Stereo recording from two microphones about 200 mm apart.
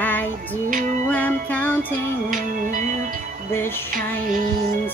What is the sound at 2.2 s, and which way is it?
Music, 45° right (ahead or behind).